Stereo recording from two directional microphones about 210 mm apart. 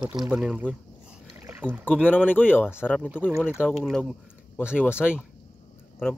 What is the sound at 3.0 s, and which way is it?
Speech, 5° right (ahead or behind).